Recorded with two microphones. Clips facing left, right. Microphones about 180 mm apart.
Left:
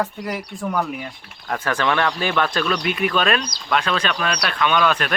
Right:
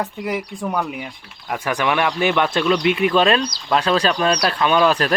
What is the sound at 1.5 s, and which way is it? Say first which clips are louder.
Speech: right 1 dB; 15° right (ahead or behind).